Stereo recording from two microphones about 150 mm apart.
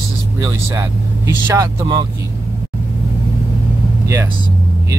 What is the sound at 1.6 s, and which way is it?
Speech, 30° right (ahead or behind).